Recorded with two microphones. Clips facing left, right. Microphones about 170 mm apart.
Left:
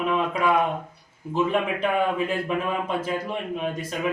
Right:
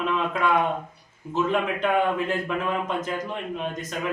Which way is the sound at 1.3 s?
5° left (ahead or behind).